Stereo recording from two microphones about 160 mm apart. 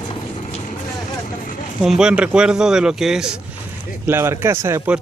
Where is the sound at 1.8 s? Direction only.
5° right (ahead or behind).